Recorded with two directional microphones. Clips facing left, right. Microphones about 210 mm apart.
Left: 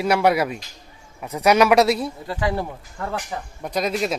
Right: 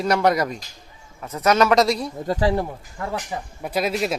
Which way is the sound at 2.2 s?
40° right (ahead or behind).